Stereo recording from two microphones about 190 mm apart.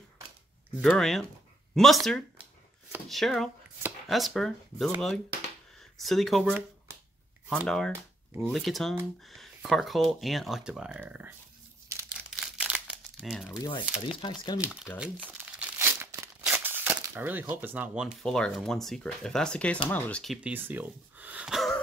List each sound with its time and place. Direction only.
0.7 s speech: centre (ahead or behind)
5.9 s speech: centre (ahead or behind)
12.1 s crumpling: 5° right (ahead or behind)
13.8 s speech: 5° right (ahead or behind)
14.2 s speech: 25° left (ahead or behind)
14.6 s speech: 5° right (ahead or behind)
20.3 s speech: 10° right (ahead or behind)